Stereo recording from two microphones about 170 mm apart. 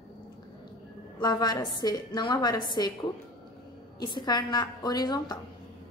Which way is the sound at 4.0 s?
25° left (ahead or behind).